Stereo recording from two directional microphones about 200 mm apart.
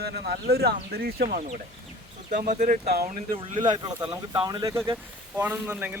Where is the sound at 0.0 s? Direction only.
55° right (ahead or behind).